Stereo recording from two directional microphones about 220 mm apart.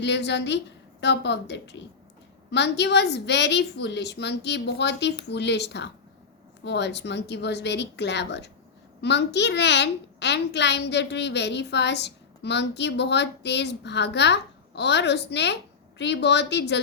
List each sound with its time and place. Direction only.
0.0 s a child's voice: 50° left (ahead or behind)